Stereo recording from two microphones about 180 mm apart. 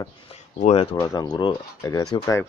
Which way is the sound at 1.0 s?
20° left (ahead or behind).